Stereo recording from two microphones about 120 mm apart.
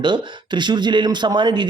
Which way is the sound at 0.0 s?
40° right (ahead or behind).